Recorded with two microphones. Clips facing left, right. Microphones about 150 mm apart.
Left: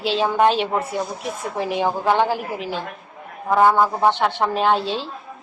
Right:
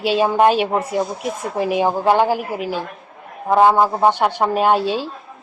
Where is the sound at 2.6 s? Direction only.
45° right (ahead or behind).